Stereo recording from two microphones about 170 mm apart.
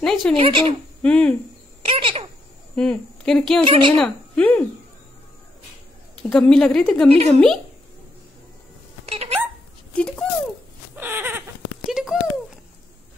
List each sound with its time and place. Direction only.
0.0 s a woman's voice: centre (ahead or behind)
0.4 s speech: 30° right (ahead or behind)
1.0 s speech: 5° left (ahead or behind)
1.9 s speech: 30° right (ahead or behind)
2.7 s speech: 5° left (ahead or behind)
3.6 s a woman's voice: 30° right (ahead or behind)
4.0 s speech: 10° left (ahead or behind)
6.3 s a woman's voice: 5° left (ahead or behind)
7.1 s speech: 35° right (ahead or behind)
9.0 s hiccup: 35° right (ahead or behind)
9.9 s a woman's voice: 5° left (ahead or behind)
11.0 s a sound: 10° right (ahead or behind)